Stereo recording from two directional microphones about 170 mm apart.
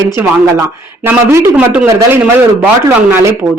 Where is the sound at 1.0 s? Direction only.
15° right (ahead or behind).